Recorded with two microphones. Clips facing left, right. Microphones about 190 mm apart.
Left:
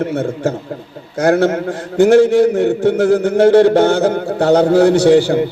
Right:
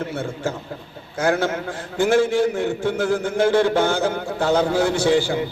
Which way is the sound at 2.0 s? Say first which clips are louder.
Left 8 dB; 70° left (ahead or behind).